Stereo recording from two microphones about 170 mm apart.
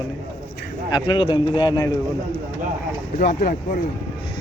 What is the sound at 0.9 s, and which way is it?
Speech, 30° left (ahead or behind).